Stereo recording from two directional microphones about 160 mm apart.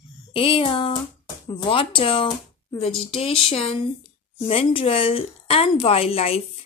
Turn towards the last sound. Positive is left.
turn(degrees=40)  # may be behind; listen again after turning